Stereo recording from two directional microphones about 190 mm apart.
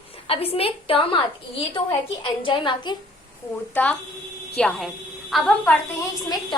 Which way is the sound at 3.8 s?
10° left (ahead or behind).